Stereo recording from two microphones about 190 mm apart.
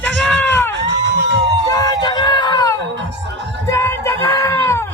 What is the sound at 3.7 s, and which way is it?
Music, 15° left (ahead or behind).